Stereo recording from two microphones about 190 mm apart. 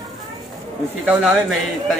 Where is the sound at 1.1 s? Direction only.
5° right (ahead or behind).